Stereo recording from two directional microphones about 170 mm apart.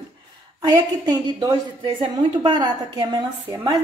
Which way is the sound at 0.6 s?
25° right (ahead or behind).